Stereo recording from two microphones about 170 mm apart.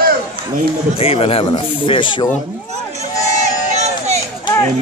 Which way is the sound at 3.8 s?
40° right (ahead or behind).